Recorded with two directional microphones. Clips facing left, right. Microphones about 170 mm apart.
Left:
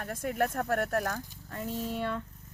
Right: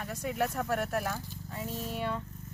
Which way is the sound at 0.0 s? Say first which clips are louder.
Left 2 dB; 50° left (ahead or behind).